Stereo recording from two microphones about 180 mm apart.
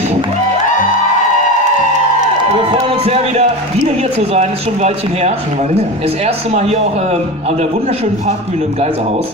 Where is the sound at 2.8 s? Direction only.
35° right (ahead or behind).